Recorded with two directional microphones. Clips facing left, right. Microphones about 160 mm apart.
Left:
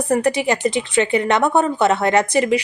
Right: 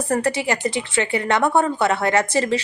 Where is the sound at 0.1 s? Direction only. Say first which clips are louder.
Left 4 dB; 20° left (ahead or behind).